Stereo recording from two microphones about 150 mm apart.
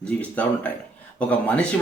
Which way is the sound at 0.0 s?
10° left (ahead or behind).